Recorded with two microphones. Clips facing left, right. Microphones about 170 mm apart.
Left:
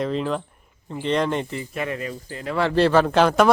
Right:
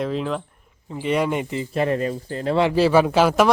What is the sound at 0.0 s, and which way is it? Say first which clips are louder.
A man's voice: even; centre (ahead or behind).